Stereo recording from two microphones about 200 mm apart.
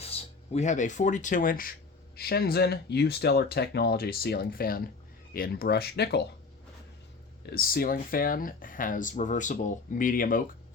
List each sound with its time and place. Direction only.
0.0 s speech: 30° left (ahead or behind); by 6.2 s 55° left (ahead or behind)
7.4 s speech: 50° left (ahead or behind)